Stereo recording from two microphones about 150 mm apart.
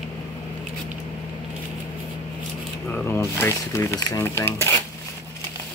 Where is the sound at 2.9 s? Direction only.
15° left (ahead or behind).